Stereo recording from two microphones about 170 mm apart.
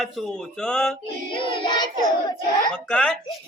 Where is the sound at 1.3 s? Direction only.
30° left (ahead or behind).